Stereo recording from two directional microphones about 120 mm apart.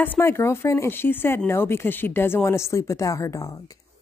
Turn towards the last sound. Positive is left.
turn(degrees=25)  # may be behind; listen again after turning